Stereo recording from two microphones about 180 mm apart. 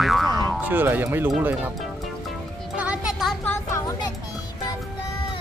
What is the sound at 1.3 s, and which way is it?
Speech, 10° right (ahead or behind).